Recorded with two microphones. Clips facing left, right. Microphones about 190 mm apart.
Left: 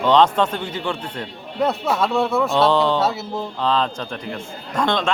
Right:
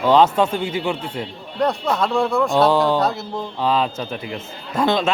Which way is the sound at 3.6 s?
10° right (ahead or behind).